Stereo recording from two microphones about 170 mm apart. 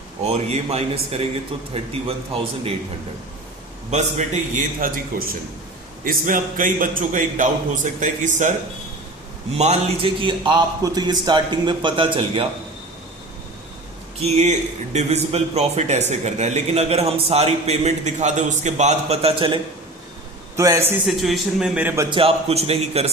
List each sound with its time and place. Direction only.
0.3 s a man's voice: 40° right (ahead or behind)
3.9 s a man's voice: 45° right (ahead or behind)
9.6 s a man's voice: 35° right (ahead or behind)
14.9 s a man's voice: 40° right (ahead or behind)
20.6 s a man's voice: 15° right (ahead or behind)
21.1 s speech: centre (ahead or behind)
22.1 s a man's voice: 35° right (ahead or behind)